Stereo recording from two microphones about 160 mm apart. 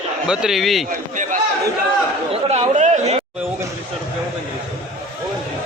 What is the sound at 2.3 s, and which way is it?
Chatter, 45° right (ahead or behind).